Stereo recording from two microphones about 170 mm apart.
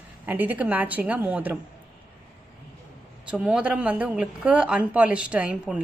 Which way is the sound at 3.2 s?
5° right (ahead or behind).